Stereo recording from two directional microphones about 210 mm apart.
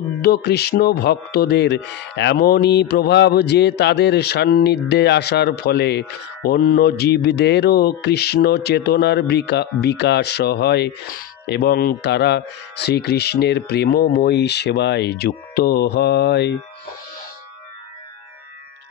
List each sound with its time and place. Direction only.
0.2 s speech: 50° left (ahead or behind)